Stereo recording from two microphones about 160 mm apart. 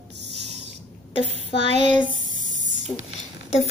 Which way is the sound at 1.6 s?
45° right (ahead or behind).